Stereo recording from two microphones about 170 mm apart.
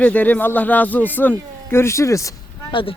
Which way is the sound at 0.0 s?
10° left (ahead or behind).